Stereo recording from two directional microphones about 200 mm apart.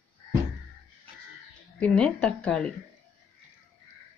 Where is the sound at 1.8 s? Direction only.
5° left (ahead or behind).